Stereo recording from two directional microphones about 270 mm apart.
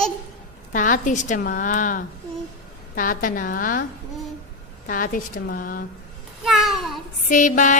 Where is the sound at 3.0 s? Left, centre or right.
Left.